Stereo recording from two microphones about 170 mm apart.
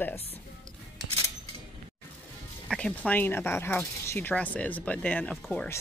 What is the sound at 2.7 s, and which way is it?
Speech, 5° left (ahead or behind).